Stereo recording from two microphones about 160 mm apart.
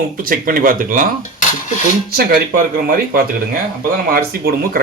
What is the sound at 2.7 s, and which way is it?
Speech, 70° right (ahead or behind).